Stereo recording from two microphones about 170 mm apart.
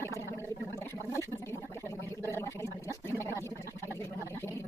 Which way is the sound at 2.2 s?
15° left (ahead or behind).